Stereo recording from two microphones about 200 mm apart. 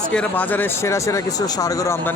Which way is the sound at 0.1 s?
5° left (ahead or behind).